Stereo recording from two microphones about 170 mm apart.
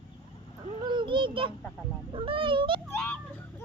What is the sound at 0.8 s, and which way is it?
A child's voice, 30° right (ahead or behind).